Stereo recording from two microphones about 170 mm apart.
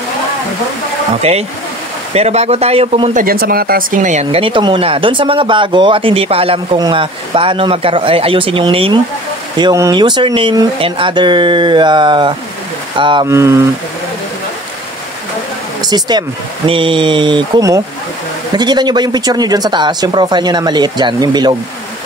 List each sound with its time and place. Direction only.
2.1 s speech: 40° right (ahead or behind)
3.2 s speech: 60° right (ahead or behind); by 13.3 s 30° right (ahead or behind)
13.3 s speech: 15° right (ahead or behind)
15.8 s speech: 25° right (ahead or behind)